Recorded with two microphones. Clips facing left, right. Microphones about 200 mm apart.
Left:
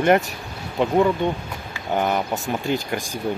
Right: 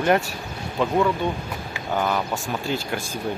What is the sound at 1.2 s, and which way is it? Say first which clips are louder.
Speech: left 2 dB; 20° left (ahead or behind).